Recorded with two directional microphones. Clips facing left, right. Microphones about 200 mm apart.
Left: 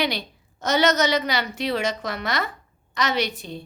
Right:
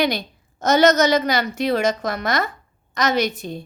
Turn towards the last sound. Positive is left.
turn(degrees=-45)  # may be behind; listen again after turning